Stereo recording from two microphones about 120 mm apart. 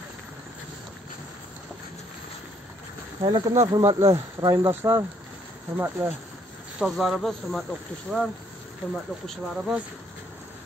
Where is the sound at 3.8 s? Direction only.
25° right (ahead or behind).